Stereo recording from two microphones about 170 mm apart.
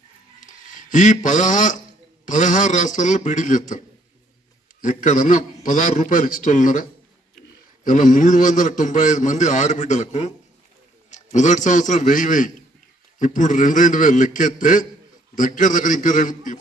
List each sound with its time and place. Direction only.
0.4 s a sound: 50° left (ahead or behind)
2.2 s a man's voice: 45° left (ahead or behind)
4.8 s a man's voice: 50° left (ahead or behind)